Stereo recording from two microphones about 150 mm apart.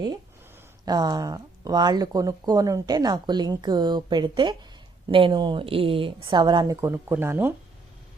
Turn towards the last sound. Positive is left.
turn(degrees=-15)  # may be behind; listen again after turning